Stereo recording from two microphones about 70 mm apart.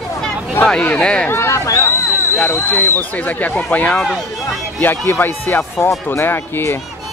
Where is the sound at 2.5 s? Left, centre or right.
Left.